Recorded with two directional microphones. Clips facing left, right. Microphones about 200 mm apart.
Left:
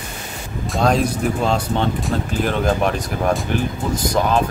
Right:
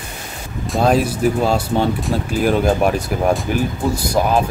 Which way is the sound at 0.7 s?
5° right (ahead or behind).